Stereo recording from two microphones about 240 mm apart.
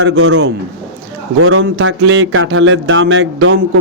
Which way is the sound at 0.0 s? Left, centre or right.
Right.